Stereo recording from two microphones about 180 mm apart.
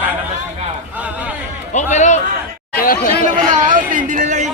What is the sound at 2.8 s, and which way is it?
Speech, 50° left (ahead or behind).